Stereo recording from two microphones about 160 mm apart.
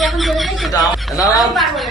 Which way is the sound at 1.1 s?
20° left (ahead or behind).